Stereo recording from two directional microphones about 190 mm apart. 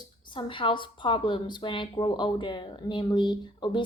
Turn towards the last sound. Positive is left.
turn(degrees=25)  # may be behind; listen again after turning